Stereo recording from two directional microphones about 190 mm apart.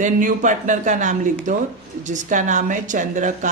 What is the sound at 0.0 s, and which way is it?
Speech, 45° right (ahead or behind).